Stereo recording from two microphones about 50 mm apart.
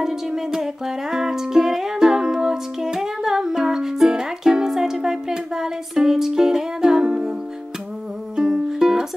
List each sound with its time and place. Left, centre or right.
0.0 s music: centre
8.4 s music: centre